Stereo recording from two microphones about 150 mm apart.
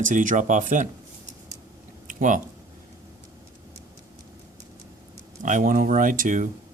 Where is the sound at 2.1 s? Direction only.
60° right (ahead or behind).